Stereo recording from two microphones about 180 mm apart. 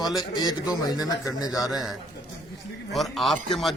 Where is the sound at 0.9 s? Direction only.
20° left (ahead or behind).